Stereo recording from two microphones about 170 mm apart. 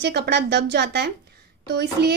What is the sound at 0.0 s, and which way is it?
A woman's voice, 75° right (ahead or behind).